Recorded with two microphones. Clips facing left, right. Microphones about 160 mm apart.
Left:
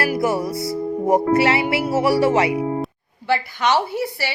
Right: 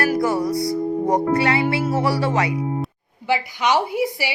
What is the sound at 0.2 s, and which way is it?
Speech, 25° left (ahead or behind).